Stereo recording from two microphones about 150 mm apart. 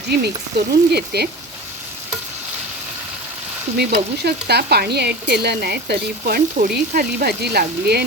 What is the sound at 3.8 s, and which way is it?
Speech, 90° right.